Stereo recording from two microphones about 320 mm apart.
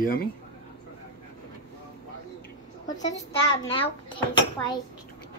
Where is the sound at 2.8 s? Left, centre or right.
Centre.